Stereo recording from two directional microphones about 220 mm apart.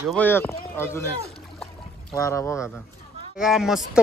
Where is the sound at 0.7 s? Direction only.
10° left (ahead or behind).